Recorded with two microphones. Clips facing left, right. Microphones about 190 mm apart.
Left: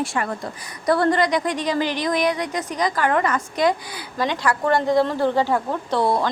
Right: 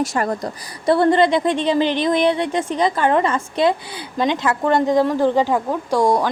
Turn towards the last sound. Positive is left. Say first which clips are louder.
# right 3 dB
turn(degrees=-10)  # may be behind; listen again after turning